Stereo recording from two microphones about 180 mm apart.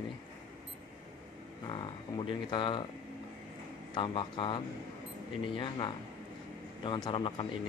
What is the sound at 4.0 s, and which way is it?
Speech, 30° left (ahead or behind).